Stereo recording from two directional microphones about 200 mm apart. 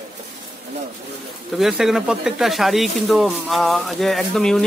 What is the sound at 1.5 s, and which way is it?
Speech, centre (ahead or behind).